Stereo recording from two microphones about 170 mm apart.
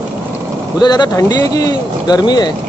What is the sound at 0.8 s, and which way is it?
Speech, 25° left (ahead or behind).